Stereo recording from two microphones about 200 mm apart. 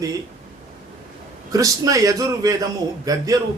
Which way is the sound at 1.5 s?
15° right (ahead or behind).